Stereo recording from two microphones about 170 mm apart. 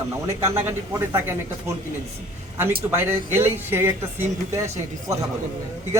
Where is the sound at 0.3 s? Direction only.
15° right (ahead or behind).